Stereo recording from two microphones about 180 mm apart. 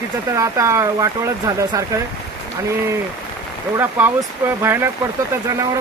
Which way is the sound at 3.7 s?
10° right (ahead or behind).